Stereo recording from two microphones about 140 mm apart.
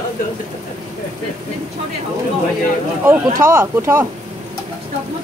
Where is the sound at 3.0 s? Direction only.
15° right (ahead or behind).